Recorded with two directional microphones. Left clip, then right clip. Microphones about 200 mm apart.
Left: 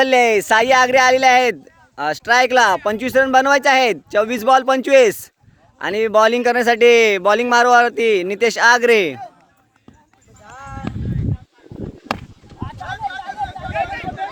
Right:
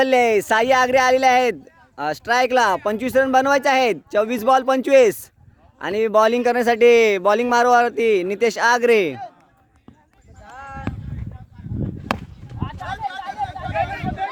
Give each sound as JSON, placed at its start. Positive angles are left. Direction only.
{"t": 0.0, "sound": "speech", "side_deg": -5}
{"t": 10.5, "sound": "music", "side_deg": 55}
{"t": 13.1, "sound": "a sound", "side_deg": -60}